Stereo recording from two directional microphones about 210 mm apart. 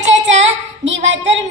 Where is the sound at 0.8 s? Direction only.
60° right (ahead or behind).